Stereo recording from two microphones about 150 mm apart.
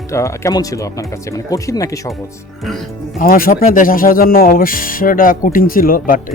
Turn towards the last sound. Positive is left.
turn(degrees=70)  # may be behind; listen again after turning